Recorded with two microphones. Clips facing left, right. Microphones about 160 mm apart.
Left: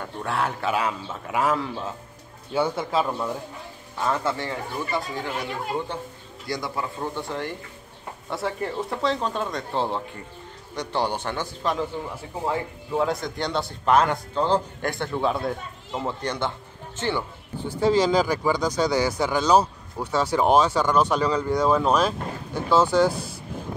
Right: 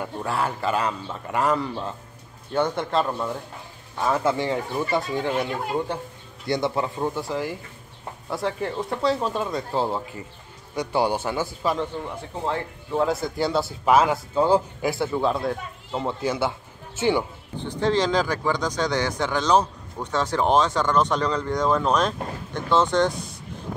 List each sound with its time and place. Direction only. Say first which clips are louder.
0.0 s speech: right 1 dB; centre (ahead or behind)
4.0 s speech: right 3 dB; 10° right (ahead or behind)
7.2 s speech: right 2 dB; 5° right (ahead or behind)
12.4 s speech: left 1 dB; 10° left (ahead or behind)
13.0 s speech: right 4 dB; 5° right (ahead or behind)
17.6 s speech: left 2 dB; 10° left (ahead or behind)